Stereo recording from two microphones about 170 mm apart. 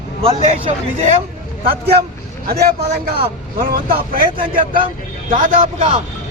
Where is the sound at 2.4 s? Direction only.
60° right (ahead or behind).